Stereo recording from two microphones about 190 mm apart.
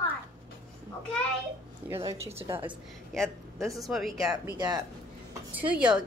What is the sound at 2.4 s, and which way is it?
Speech, 20° right (ahead or behind).